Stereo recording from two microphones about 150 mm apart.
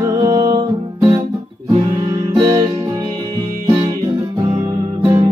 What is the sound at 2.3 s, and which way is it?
Music, 35° right (ahead or behind).